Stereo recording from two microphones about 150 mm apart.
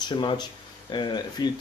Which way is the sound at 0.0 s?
30° left (ahead or behind).